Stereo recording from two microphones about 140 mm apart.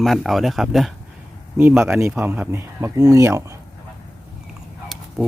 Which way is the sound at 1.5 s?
15° right (ahead or behind).